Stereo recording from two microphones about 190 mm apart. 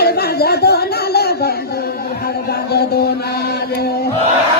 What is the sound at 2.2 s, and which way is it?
Chant, 55° left (ahead or behind).